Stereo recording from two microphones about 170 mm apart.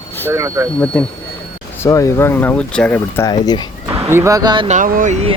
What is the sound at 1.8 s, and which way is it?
A man's voice, 20° left (ahead or behind).